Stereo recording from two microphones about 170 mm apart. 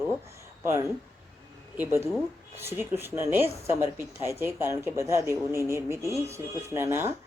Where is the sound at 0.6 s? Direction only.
15° right (ahead or behind).